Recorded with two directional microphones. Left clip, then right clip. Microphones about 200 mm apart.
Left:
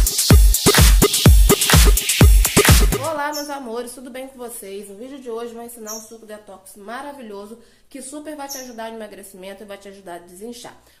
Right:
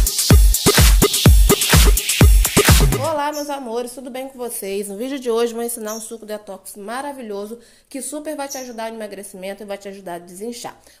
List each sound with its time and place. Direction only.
0.0 s music: centre (ahead or behind)
3.0 s speech: 20° right (ahead or behind)
4.6 s a woman's voice: 40° right (ahead or behind)
6.9 s a woman's voice: 35° right (ahead or behind)